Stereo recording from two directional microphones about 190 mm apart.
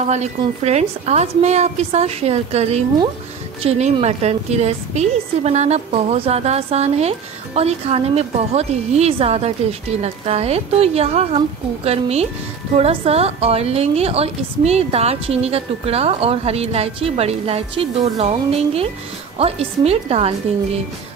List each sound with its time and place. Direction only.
0.1 s a woman's voice: 35° right (ahead or behind)